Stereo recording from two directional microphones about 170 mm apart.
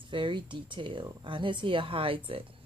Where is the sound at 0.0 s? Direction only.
30° right (ahead or behind).